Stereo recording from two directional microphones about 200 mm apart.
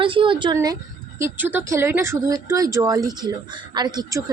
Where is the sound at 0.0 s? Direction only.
25° right (ahead or behind).